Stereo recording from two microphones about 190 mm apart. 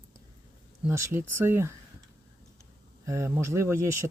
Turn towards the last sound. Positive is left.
turn(degrees=-15)  # may be behind; listen again after turning